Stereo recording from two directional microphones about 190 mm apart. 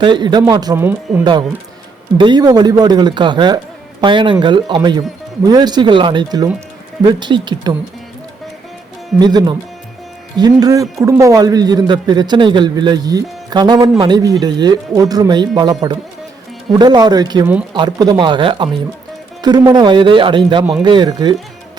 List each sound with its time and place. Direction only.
0.0 s a man's voice: 25° right (ahead or behind)
1.2 s a man's voice: 25° right (ahead or behind)
9.1 s a man's voice: 20° right (ahead or behind)